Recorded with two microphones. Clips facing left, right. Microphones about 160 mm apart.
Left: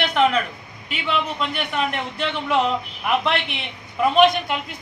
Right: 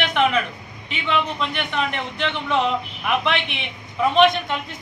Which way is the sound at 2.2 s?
10° left (ahead or behind).